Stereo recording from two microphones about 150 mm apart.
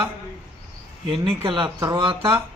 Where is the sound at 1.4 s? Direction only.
35° right (ahead or behind).